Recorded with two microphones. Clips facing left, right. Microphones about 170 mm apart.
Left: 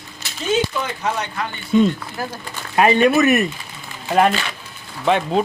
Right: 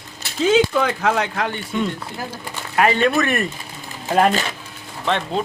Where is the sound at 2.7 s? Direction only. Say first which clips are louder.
Left 3 dB; 20° left (ahead or behind).